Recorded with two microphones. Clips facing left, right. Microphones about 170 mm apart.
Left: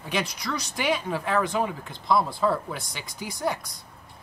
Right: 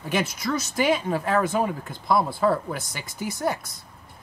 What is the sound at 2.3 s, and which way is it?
Speech, centre (ahead or behind).